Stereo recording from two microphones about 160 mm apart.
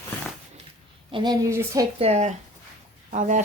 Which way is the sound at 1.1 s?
25° right (ahead or behind).